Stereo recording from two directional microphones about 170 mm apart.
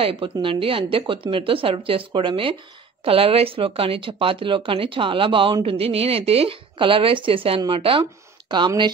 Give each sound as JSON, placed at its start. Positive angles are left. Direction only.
{"t": 0.0, "sound": "speech", "side_deg": -30}